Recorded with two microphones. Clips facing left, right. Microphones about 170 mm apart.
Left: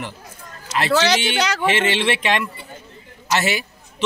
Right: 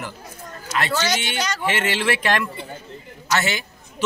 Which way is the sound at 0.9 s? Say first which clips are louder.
Left 9 dB; 70° left (ahead or behind).